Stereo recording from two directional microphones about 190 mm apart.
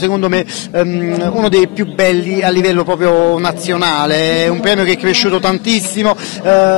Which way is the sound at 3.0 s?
15° left (ahead or behind).